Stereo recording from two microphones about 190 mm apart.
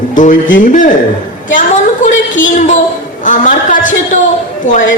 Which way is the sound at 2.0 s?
40° left (ahead or behind).